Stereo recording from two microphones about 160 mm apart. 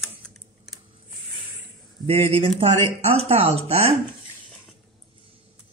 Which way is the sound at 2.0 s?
40° right (ahead or behind).